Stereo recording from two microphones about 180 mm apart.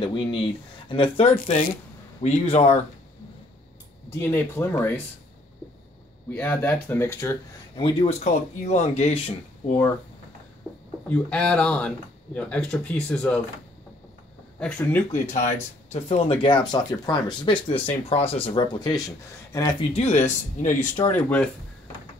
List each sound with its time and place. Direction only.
0.0 s speech: 25° left (ahead or behind)
4.2 s speech: 15° left (ahead or behind)
6.3 s speech: 10° left (ahead or behind)
7.7 s speech: 30° left (ahead or behind)
10.6 s a sound: centre (ahead or behind)
11.1 s speech: 5° left (ahead or behind)
14.6 s speech: 10° left (ahead or behind)
15.3 s speech: 40° left (ahead or behind); by 19.9 s 20° left (ahead or behind)
19.9 s speech: 35° left (ahead or behind)
21.1 s speech: 10° left (ahead or behind)